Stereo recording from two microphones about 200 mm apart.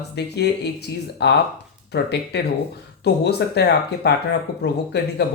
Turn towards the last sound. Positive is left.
turn(degrees=55)  # may be behind; listen again after turning